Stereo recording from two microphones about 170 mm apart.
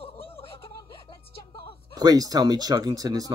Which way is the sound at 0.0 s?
35° left (ahead or behind).